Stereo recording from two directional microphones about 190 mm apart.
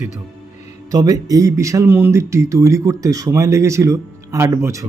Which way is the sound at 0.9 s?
20° right (ahead or behind).